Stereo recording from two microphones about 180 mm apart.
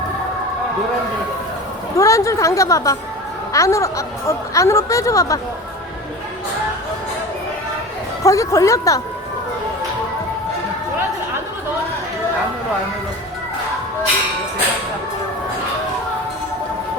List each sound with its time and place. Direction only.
2.0 s speech: 15° left (ahead or behind)
8.2 s speech: 15° left (ahead or behind)